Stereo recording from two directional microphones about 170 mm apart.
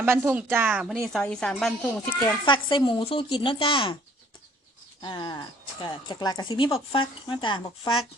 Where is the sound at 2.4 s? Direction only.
30° left (ahead or behind).